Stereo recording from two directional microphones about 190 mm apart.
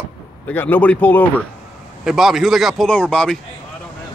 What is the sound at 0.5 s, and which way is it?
Speech, 10° left (ahead or behind).